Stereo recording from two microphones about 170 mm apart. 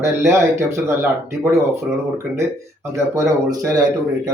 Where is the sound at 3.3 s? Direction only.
20° right (ahead or behind).